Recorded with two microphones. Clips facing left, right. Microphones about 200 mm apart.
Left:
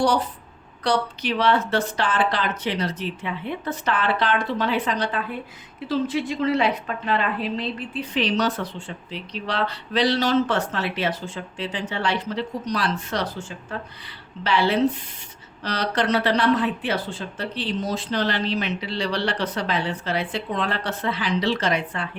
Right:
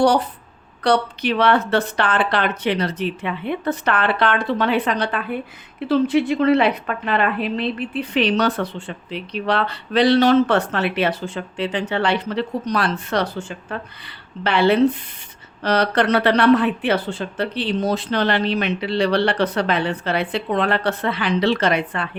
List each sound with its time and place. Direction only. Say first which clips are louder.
0.9 s speech: right 5 dB; 60° right (ahead or behind)